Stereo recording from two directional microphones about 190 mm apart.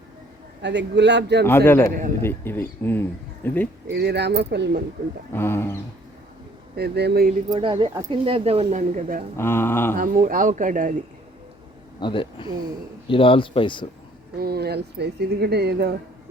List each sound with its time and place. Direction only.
0.6 s speech: 65° right (ahead or behind)
1.5 s speech: 10° left (ahead or behind)
3.9 s speech: 60° right (ahead or behind)
5.3 s speech: 10° left (ahead or behind)
6.7 s speech: 60° right (ahead or behind)
7.5 s speech: 25° right (ahead or behind); by 9.2 s 45° right (ahead or behind)
9.4 s speech: 10° left (ahead or behind)
10.0 s speech: 45° right (ahead or behind)
11.9 s speech: 25° left (ahead or behind)
14.3 s speech: 55° right (ahead or behind)